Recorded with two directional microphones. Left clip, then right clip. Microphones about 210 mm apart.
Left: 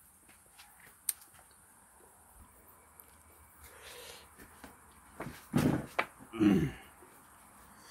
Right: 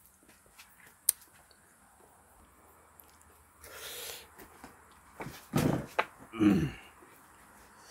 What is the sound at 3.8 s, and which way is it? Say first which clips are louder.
Owl: right 6 dB; 55° right (ahead or behind).